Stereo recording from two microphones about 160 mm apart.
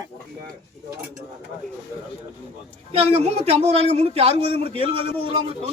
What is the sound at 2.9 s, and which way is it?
A man's voice, 40° right (ahead or behind).